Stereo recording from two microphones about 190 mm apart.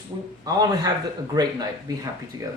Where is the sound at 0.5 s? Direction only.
20° right (ahead or behind).